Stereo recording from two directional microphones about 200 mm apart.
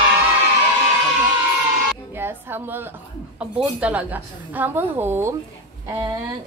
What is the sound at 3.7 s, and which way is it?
A woman's voice, 10° right (ahead or behind).